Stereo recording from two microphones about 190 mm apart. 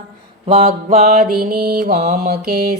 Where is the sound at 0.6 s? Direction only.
50° right (ahead or behind).